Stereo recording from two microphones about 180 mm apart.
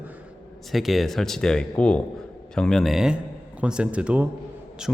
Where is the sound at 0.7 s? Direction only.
Centre (ahead or behind).